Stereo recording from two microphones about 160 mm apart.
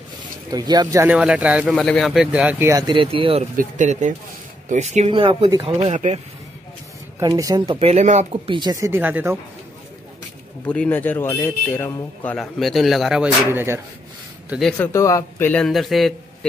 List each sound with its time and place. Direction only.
0.5 s speech: 25° right (ahead or behind)
1.1 s speech: 5° right (ahead or behind)
1.8 s speech: 5° left (ahead or behind)
2.9 s speech: 35° right (ahead or behind)
3.5 s speech: 50° right (ahead or behind); by 5.8 s 30° right (ahead or behind)
5.8 s speech: 45° right (ahead or behind)
7.2 s speech: 20° right (ahead or behind)
7.9 s speech: 45° right (ahead or behind); by 9.4 s 15° right (ahead or behind)
10.7 s a man's voice: 10° left (ahead or behind)
13.5 s speech: 15° right (ahead or behind)
14.5 s speech: centre (ahead or behind)
14.8 s a man's voice: 20° left (ahead or behind); by 16.2 s centre (ahead or behind)